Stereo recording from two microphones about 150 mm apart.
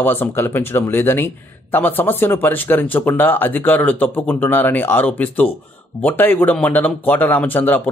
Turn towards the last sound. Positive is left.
turn(degrees=10)  # may be behind; listen again after turning